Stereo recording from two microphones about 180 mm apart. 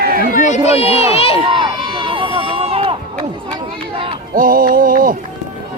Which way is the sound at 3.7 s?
30° right (ahead or behind).